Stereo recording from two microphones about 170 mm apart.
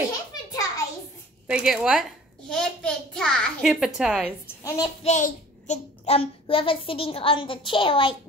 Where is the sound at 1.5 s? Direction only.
5° right (ahead or behind).